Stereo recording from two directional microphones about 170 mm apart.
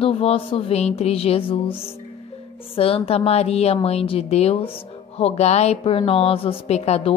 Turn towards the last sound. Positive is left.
turn(degrees=35)  # may be behind; listen again after turning